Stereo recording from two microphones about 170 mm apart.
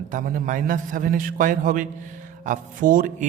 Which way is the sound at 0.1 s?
55° right (ahead or behind).